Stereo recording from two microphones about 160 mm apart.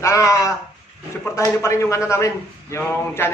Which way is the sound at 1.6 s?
15° left (ahead or behind).